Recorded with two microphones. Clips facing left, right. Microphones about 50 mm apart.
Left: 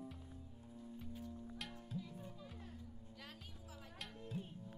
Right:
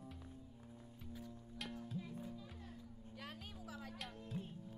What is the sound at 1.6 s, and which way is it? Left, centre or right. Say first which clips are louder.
Music: right 5 dB; centre.